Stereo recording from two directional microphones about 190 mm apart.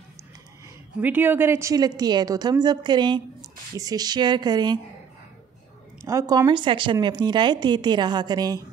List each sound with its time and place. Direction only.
1.0 s a woman's voice: 10° right (ahead or behind)
6.0 s a woman's voice: 15° right (ahead or behind)